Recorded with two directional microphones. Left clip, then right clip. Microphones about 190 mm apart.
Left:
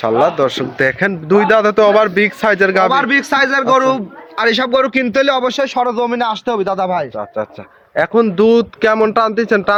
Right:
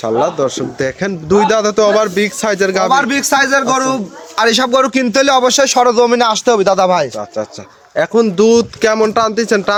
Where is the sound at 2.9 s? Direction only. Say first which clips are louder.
Right 1 dB; 70° right (ahead or behind).